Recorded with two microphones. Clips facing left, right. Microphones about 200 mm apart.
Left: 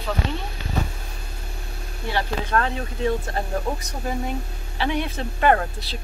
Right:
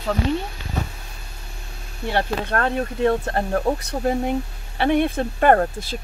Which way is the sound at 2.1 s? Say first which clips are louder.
Right 1 dB; 55° right (ahead or behind).